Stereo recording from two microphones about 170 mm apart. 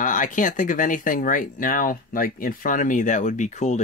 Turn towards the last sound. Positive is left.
turn(degrees=45)  # may be behind; listen again after turning